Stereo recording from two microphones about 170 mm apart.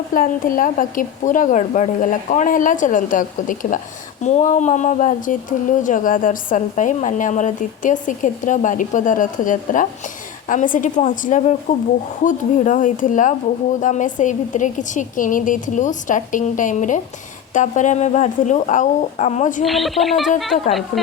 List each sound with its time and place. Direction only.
0.1 s speech: 55° left (ahead or behind)
19.6 s speech: centre (ahead or behind)